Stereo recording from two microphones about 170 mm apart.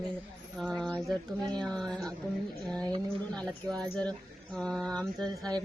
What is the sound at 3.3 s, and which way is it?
Speech, 5° left (ahead or behind).